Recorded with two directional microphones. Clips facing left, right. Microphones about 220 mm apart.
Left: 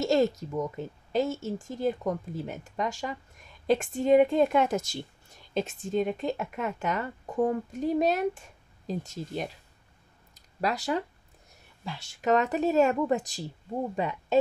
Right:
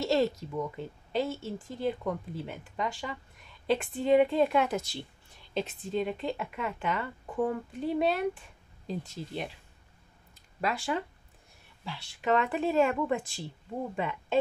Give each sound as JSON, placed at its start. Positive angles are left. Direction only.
{"t": 0.0, "sound": "speech", "side_deg": 45}
{"t": 10.3, "sound": "a sound", "side_deg": 40}
{"t": 11.8, "sound": "speech", "side_deg": 45}